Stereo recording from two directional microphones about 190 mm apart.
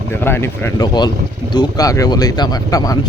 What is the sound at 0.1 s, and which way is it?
Speech, 10° left (ahead or behind).